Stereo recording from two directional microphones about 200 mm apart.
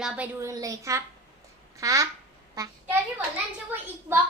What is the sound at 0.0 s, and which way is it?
A woman's voice, 10° right (ahead or behind).